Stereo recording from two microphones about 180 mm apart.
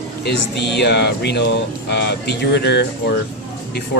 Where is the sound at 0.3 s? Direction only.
70° left (ahead or behind).